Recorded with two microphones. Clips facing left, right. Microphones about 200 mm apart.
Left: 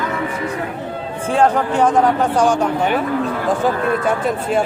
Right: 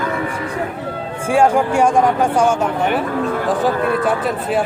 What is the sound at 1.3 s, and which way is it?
Speech, 10° right (ahead or behind).